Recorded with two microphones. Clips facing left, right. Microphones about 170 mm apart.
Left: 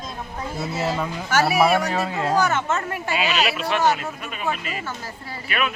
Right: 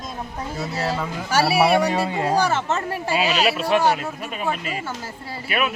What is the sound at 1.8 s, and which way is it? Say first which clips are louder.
Speech: right 3 dB; 15° right (ahead or behind).